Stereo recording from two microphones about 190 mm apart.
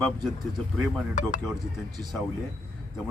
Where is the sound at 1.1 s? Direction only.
40° left (ahead or behind).